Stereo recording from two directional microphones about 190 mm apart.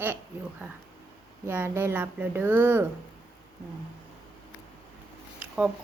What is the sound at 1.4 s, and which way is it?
Speech, 10° right (ahead or behind).